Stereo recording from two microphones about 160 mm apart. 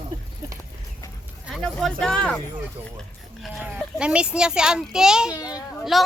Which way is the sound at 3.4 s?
5° right (ahead or behind).